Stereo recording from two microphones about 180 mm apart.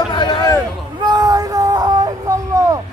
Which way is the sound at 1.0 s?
20° right (ahead or behind).